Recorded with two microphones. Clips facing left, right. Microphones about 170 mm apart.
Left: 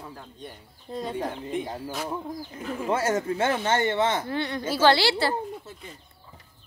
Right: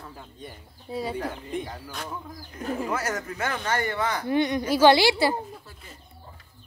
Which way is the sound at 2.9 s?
25° left (ahead or behind).